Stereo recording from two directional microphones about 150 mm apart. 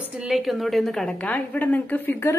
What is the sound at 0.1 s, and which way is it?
A woman's voice, centre (ahead or behind).